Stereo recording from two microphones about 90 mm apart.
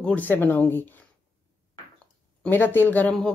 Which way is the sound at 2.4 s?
20° left (ahead or behind).